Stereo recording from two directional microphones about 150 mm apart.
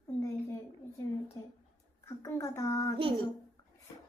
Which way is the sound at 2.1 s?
20° left (ahead or behind).